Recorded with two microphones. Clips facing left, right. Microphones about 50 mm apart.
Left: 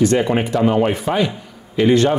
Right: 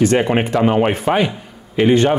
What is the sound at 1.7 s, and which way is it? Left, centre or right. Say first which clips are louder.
Speech: right 1 dB; right.